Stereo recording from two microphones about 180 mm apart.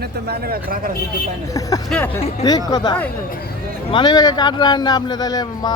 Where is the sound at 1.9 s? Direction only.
10° left (ahead or behind).